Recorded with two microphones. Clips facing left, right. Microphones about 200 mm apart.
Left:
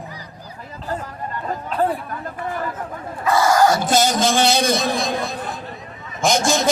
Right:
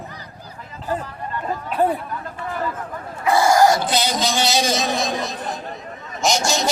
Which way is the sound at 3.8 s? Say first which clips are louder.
Left 4 dB; 45° left (ahead or behind).